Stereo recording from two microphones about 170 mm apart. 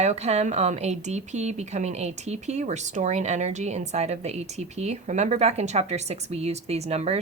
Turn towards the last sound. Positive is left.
turn(degrees=-40)  # may be behind; listen again after turning